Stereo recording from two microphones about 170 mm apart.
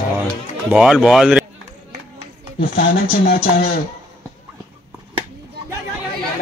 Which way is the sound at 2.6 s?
65° left (ahead or behind).